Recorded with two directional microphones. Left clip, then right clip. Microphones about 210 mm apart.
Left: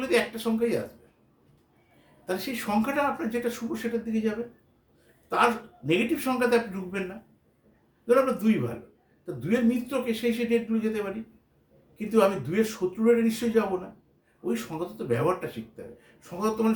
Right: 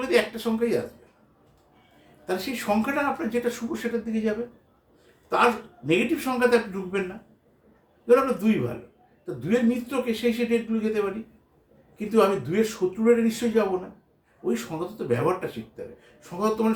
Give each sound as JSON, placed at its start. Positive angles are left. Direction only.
{"t": 0.1, "sound": "speech", "side_deg": 15}
{"t": 2.2, "sound": "speech", "side_deg": 15}
{"t": 5.3, "sound": "speech", "side_deg": 15}
{"t": 8.0, "sound": "speech", "side_deg": 15}